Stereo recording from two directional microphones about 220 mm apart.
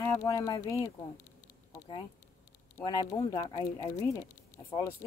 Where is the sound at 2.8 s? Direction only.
15° left (ahead or behind).